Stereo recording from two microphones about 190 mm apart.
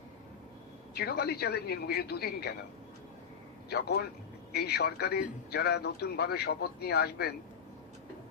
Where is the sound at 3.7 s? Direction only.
60° left (ahead or behind).